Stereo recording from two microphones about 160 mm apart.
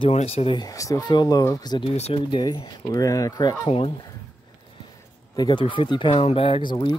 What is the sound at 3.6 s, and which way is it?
Speech, 35° left (ahead or behind).